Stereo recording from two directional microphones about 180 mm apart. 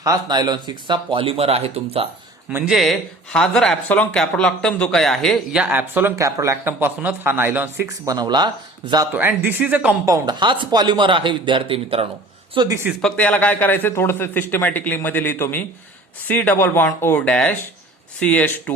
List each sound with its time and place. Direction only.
0.0 s speech: 20° right (ahead or behind)
2.5 s speech: 5° right (ahead or behind); by 9.0 s 25° right (ahead or behind)
9.5 s speech: 10° right (ahead or behind)
10.1 s speech: 25° right (ahead or behind)
12.5 s speech: 15° right (ahead or behind)
12.9 s a man's voice: 5° left (ahead or behind)